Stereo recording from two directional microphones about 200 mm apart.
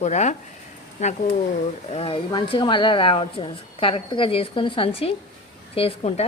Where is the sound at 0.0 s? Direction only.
35° left (ahead or behind).